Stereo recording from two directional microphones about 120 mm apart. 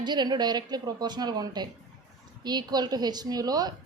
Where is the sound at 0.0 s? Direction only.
40° right (ahead or behind).